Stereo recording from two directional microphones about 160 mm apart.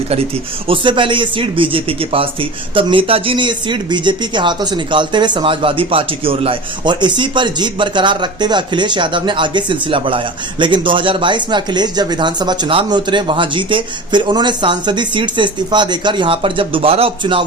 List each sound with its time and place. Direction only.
0.7 s speech: 30° right (ahead or behind)